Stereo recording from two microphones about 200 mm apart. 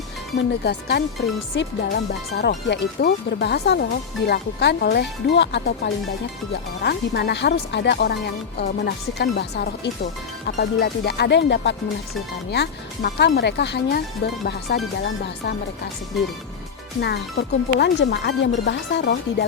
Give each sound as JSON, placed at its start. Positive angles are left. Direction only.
{"t": 0.6, "sound": "speech", "side_deg": 55}
{"t": 17.0, "sound": "speech", "side_deg": 55}